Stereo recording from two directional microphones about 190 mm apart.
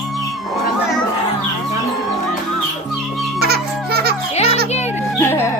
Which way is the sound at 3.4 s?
55° right (ahead or behind).